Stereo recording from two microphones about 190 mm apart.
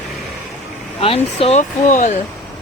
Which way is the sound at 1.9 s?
40° left (ahead or behind).